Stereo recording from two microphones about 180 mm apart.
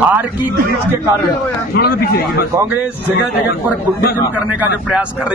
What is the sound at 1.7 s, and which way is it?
Speech, 60° left (ahead or behind).